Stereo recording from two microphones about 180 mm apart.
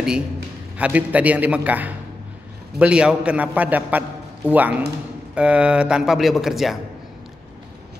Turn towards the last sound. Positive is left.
turn(degrees=0)  # may be behind; listen again after turning